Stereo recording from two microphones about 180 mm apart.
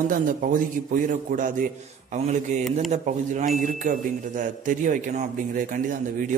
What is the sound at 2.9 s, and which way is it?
A man's voice, 45° right (ahead or behind).